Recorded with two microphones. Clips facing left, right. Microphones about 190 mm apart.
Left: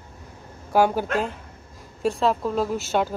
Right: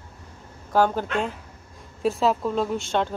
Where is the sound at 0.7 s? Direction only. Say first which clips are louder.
Left 1 dB; 10° left (ahead or behind).